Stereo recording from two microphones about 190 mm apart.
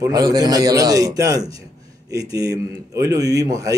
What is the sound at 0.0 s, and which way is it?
A man's voice, 20° right (ahead or behind).